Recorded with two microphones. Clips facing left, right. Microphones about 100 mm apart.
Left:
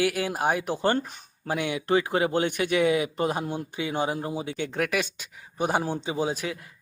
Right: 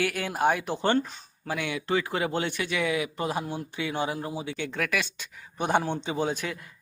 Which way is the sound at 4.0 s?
30° left (ahead or behind).